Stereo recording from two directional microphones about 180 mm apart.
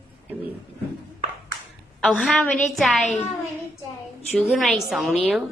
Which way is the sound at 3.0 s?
40° left (ahead or behind).